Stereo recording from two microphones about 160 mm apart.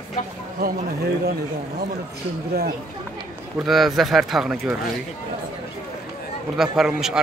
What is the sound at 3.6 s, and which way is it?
Speech, centre (ahead or behind).